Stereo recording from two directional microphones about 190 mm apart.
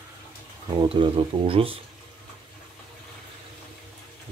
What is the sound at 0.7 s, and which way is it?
Speech, 25° right (ahead or behind).